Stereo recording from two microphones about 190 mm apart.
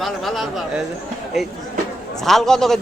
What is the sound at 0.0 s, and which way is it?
Speech, centre (ahead or behind).